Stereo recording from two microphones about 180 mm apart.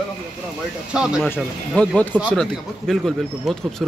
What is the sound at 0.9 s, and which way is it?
Speech, 5° right (ahead or behind).